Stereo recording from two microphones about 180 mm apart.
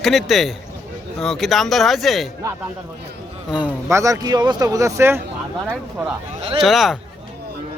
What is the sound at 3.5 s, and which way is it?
Speech, 10° right (ahead or behind).